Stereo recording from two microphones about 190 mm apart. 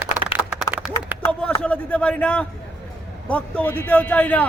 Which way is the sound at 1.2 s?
10° left (ahead or behind).